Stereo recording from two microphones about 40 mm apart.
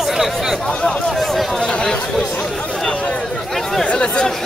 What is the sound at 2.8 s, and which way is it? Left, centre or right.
Chatter, left.